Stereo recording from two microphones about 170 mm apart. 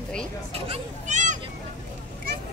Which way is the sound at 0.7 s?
45° right (ahead or behind).